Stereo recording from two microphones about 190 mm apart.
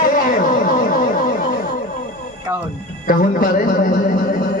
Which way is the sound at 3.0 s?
45° left (ahead or behind).